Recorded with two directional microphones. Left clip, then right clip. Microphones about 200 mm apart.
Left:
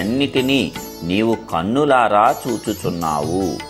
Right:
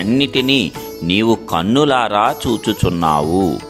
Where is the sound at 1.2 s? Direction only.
35° right (ahead or behind).